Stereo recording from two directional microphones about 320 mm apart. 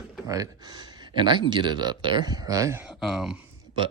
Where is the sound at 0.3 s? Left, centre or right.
Centre.